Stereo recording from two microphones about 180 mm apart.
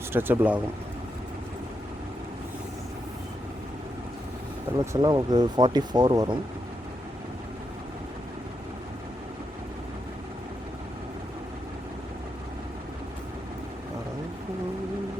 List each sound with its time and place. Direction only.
0.1 s speech: 10° right (ahead or behind)
4.9 s speech: 25° right (ahead or behind)